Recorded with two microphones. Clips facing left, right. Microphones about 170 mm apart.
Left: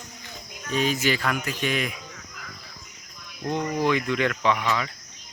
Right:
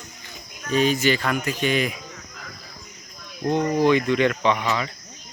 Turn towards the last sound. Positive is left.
turn(degrees=0)  # may be behind; listen again after turning